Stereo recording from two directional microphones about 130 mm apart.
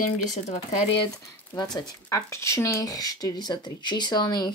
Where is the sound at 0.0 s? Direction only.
70° left (ahead or behind).